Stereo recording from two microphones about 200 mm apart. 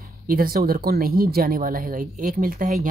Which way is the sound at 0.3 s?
45° right (ahead or behind).